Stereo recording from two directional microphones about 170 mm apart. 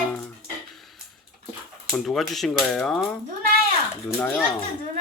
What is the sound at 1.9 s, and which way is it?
Speech, centre (ahead or behind).